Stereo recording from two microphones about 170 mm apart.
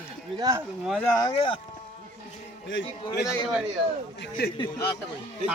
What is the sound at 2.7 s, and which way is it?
Speech, 90° left.